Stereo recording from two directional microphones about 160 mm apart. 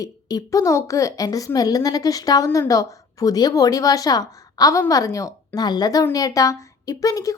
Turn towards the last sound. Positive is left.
turn(degrees=20)  # may be behind; listen again after turning